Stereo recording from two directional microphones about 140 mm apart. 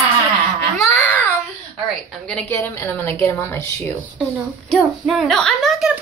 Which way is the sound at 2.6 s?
15° left (ahead or behind).